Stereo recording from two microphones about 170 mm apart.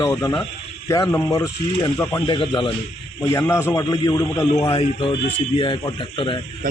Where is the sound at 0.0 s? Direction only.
20° left (ahead or behind).